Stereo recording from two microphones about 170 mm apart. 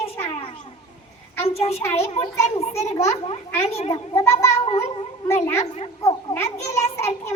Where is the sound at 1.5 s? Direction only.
35° left (ahead or behind).